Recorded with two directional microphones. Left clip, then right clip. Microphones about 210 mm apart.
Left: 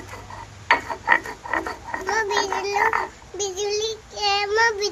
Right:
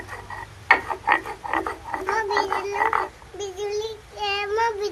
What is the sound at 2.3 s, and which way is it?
Music, centre (ahead or behind).